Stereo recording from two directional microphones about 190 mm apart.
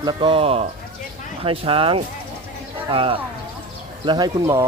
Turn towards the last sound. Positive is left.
turn(degrees=-20)  # may be behind; listen again after turning